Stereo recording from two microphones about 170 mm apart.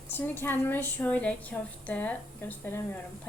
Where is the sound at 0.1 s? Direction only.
10° left (ahead or behind).